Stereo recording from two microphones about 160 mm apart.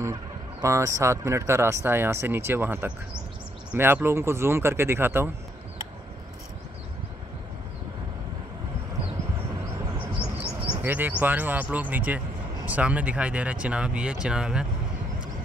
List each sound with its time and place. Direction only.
0.0 s speech: 20° right (ahead or behind)
10.8 s speech: 10° right (ahead or behind)